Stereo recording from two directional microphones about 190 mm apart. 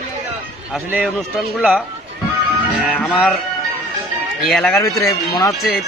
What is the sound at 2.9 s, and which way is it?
Speech, 5° left (ahead or behind).